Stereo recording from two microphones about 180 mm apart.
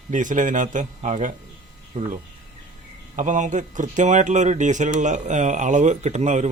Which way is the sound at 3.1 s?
45° right (ahead or behind).